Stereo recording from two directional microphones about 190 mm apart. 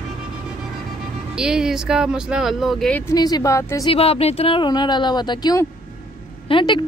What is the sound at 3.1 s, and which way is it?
Speech, 20° left (ahead or behind).